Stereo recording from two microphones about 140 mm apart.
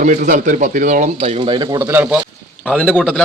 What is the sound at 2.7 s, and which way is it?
Speech, 10° left (ahead or behind).